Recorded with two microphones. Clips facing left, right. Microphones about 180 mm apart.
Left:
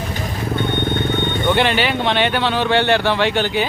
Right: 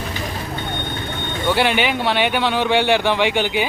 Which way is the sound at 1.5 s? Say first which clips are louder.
Even; 10° right (ahead or behind).